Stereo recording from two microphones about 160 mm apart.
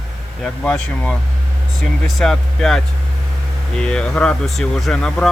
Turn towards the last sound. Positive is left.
turn(degrees=5)  # may be behind; listen again after turning